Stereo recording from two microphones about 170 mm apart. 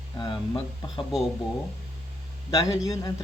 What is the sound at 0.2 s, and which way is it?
Speech, 30° left (ahead or behind).